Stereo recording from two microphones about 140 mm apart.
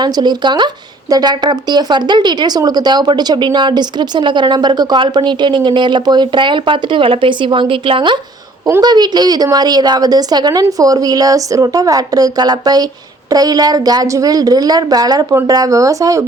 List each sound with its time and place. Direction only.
0.0 s a woman's voice: 30° right (ahead or behind)